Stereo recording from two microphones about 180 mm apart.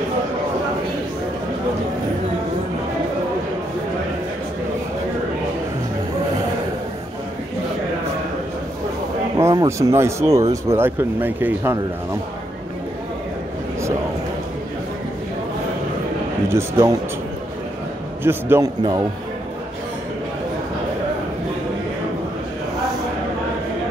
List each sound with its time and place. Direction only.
9.4 s speech: 20° right (ahead or behind)
16.4 s speech: 15° right (ahead or behind)
18.2 s speech: 15° right (ahead or behind)